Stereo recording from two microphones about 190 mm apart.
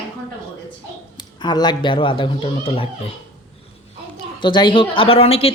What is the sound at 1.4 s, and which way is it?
A woman's voice, 25° left (ahead or behind).